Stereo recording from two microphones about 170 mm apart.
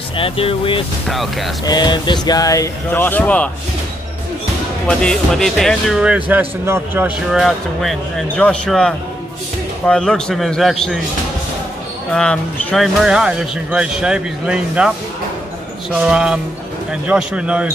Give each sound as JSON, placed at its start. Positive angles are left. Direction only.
{"t": 0.2, "sound": "speech", "side_deg": 30}
{"t": 1.0, "sound": "speech", "side_deg": 0}
{"t": 1.7, "sound": "speech", "side_deg": 25}
{"t": 4.8, "sound": "speech", "side_deg": 5}
{"t": 7.3, "sound": "speech", "side_deg": 0}
{"t": 12.1, "sound": "speech", "side_deg": 5}
{"t": 15.9, "sound": "a man's voice", "side_deg": -5}